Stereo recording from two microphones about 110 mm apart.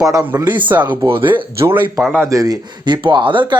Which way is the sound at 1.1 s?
50° right (ahead or behind).